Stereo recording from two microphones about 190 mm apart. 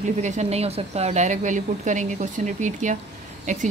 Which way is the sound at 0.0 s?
40° right (ahead or behind).